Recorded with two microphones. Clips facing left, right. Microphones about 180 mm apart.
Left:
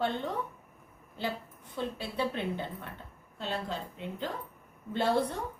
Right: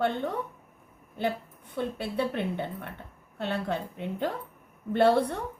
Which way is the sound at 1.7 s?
60° right (ahead or behind).